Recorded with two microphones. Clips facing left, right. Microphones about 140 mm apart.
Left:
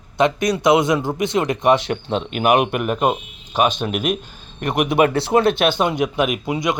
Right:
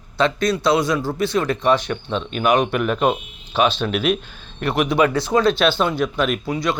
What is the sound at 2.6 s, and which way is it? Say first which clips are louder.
A man's voice: even; 10° left (ahead or behind).